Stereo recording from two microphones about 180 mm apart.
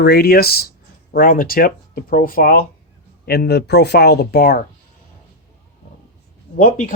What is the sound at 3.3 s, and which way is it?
Speech, 65° left (ahead or behind).